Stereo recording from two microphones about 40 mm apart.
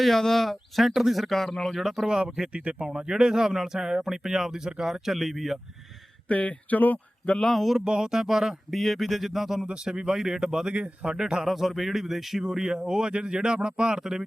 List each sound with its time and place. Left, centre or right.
0.0 s speech: centre
1.8 s speech: centre
2.5 s speech: right
3.1 s speech: centre
6.2 s speech: left
7.4 s speech: centre
7.9 s speech: centre
9.6 s speech: centre
11.4 s speech: centre; by 14.1 s right